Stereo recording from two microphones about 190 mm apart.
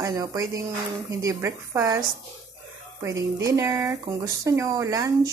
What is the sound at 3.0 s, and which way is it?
Speech, 15° right (ahead or behind).